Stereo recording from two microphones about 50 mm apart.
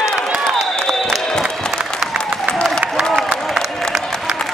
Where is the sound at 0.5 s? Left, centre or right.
Centre.